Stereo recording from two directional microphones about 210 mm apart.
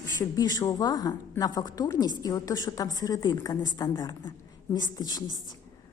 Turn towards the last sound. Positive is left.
turn(degrees=20)  # may be behind; listen again after turning